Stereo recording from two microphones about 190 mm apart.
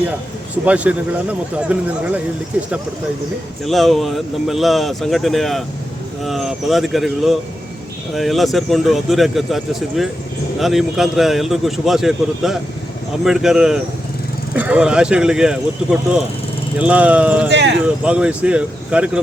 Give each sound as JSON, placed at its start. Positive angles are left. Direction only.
{"t": 0.5, "sound": "speech", "side_deg": -5}
{"t": 3.6, "sound": "speech", "side_deg": 0}
{"t": 10.6, "sound": "speech", "side_deg": 0}
{"t": 17.5, "sound": "speech", "side_deg": -65}
{"t": 17.8, "sound": "speech", "side_deg": -5}